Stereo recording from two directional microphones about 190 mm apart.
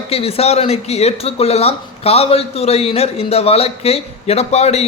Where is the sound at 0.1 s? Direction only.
30° left (ahead or behind).